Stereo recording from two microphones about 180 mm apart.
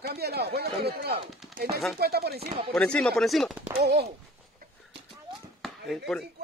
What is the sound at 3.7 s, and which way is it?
Speech, 65° right (ahead or behind).